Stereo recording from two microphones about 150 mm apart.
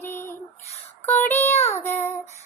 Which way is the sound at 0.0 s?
15° left (ahead or behind).